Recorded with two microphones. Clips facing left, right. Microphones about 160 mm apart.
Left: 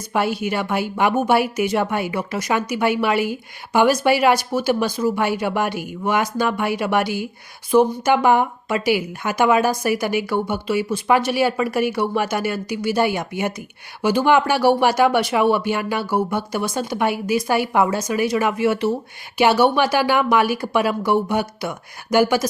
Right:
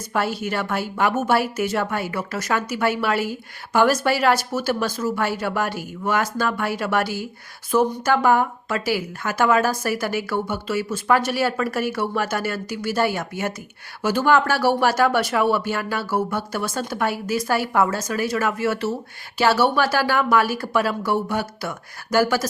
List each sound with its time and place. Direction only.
0.1 s a woman's voice: 15° left (ahead or behind)